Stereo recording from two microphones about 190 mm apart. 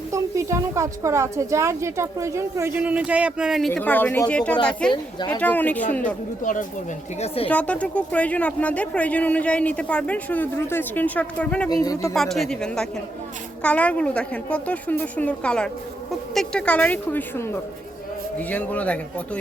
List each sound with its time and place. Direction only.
0.1 s a woman's voice: 15° right (ahead or behind)
3.7 s speech: 10° left (ahead or behind)
6.4 s speech: 45° left (ahead or behind)
7.4 s speech: 5° left (ahead or behind)
11.7 s speech: 20° left (ahead or behind)
12.1 s speech: centre (ahead or behind)